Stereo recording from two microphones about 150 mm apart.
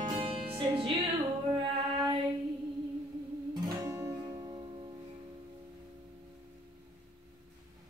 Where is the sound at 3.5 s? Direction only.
25° right (ahead or behind).